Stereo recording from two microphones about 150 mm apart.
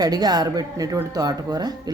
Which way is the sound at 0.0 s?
25° right (ahead or behind).